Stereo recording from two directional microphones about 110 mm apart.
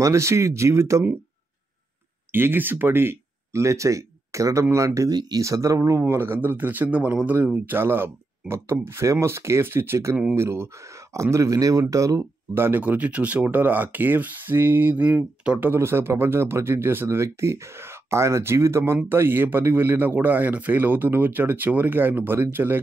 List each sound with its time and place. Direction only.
0.0 s speech: 25° right (ahead or behind)
2.3 s speech: 20° right (ahead or behind)
15.7 s speech: 20° right (ahead or behind)